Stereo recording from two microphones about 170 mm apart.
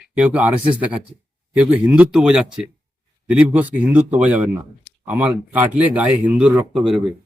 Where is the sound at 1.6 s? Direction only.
10° right (ahead or behind).